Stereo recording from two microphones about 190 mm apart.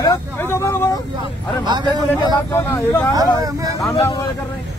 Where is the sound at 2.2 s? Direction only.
15° left (ahead or behind).